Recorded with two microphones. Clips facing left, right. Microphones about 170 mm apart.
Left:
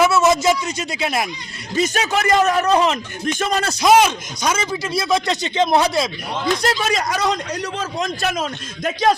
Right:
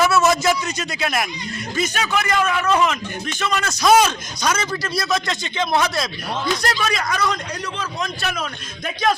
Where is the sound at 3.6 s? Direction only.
30° left (ahead or behind).